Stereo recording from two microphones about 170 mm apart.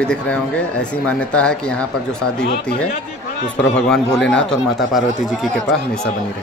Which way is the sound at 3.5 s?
5° left (ahead or behind).